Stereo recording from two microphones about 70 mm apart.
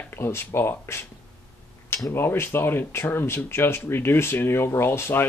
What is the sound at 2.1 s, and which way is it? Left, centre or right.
Speech, left.